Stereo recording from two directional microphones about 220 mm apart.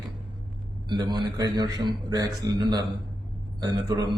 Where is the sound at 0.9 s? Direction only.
20° right (ahead or behind).